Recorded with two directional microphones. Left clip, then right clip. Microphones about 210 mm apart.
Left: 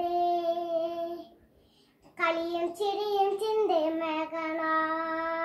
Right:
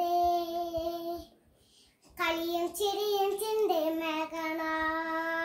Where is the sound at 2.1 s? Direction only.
30° right (ahead or behind).